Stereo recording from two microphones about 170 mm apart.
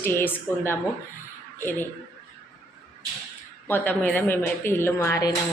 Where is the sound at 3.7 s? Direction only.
10° left (ahead or behind).